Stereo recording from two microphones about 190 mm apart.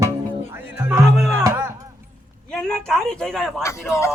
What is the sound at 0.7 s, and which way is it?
Music, 10° right (ahead or behind).